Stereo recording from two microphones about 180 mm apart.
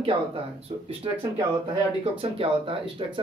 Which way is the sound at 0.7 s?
35° right (ahead or behind).